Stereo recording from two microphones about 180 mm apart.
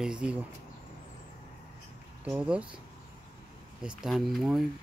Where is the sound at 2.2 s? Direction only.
5° right (ahead or behind).